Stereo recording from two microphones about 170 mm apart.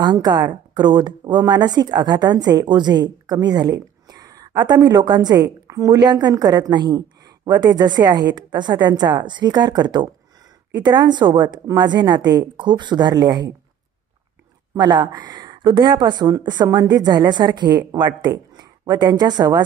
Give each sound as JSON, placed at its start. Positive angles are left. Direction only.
{"t": 0.0, "sound": "a woman's voice", "side_deg": -25}
{"t": 14.8, "sound": "speech", "side_deg": -25}